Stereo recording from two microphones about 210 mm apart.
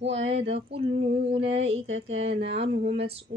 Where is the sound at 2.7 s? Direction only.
30° right (ahead or behind).